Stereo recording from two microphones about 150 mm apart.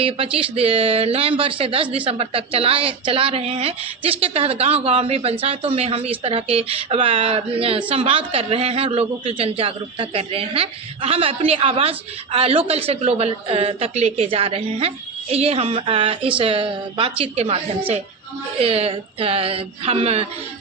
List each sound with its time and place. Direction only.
0.0 s a woman's voice: 40° right (ahead or behind)
18.6 s a woman's voice: 40° right (ahead or behind)